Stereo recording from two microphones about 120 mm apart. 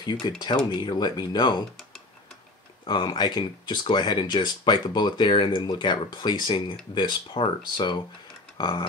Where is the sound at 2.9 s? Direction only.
40° left (ahead or behind).